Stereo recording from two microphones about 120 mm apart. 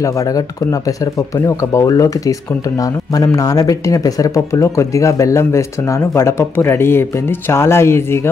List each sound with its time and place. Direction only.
0.0 s speech: 25° left (ahead or behind)